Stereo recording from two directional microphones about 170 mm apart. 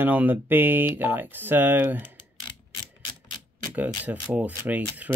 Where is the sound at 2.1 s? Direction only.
25° left (ahead or behind).